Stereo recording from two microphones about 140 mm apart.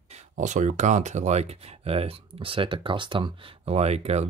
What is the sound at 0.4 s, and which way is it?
Speech, 60° right (ahead or behind).